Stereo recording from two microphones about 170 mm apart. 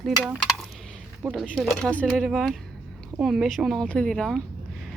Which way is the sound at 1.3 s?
Centre (ahead or behind).